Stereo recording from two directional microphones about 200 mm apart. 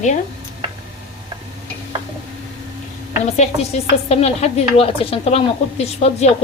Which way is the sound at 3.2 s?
35° left (ahead or behind).